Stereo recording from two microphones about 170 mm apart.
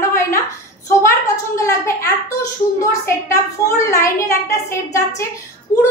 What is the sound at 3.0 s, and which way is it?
A woman's voice, 15° left (ahead or behind).